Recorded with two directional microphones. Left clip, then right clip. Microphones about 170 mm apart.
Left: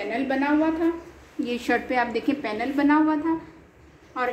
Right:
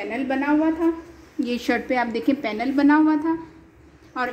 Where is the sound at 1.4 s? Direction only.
40° right (ahead or behind).